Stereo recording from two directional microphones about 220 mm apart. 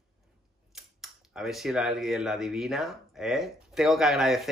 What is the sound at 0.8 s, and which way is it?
Speech, centre (ahead or behind).